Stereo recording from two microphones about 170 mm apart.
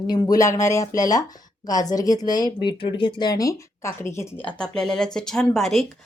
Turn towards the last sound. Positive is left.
turn(degrees=0)  # may be behind; listen again after turning